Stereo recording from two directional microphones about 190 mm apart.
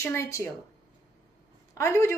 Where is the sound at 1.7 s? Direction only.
15° left (ahead or behind).